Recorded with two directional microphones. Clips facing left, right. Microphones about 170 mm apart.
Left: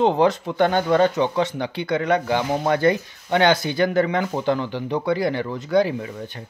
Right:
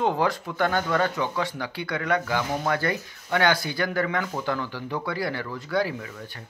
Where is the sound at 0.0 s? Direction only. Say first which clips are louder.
Left 6 dB; 25° left (ahead or behind).